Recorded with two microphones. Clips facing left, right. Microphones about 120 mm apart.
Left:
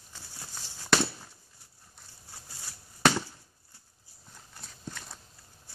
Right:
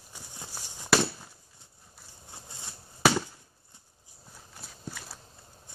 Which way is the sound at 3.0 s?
5° right (ahead or behind).